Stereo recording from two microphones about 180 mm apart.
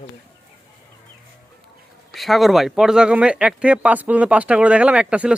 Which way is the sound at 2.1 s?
Centre (ahead or behind).